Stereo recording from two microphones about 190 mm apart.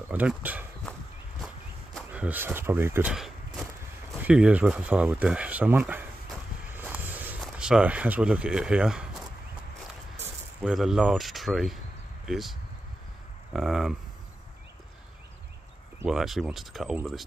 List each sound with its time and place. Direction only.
0.1 s speech: 10° right (ahead or behind)
2.0 s speech: 5° right (ahead or behind)
6.7 s a sound: 10° right (ahead or behind)
10.2 s speech: 5° right (ahead or behind)
16.1 s speech: centre (ahead or behind)